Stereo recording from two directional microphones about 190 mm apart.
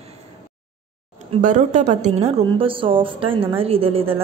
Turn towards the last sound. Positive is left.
turn(degrees=-30)  # may be behind; listen again after turning